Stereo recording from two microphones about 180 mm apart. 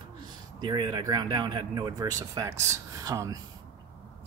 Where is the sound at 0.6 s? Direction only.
25° right (ahead or behind).